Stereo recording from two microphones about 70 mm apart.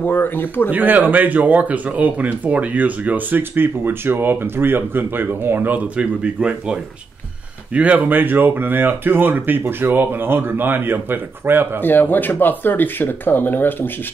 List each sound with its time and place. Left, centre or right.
0.0 s speech: left
0.7 s speech: right
5.9 s speech: centre; by 11.8 s right
11.8 s speech: left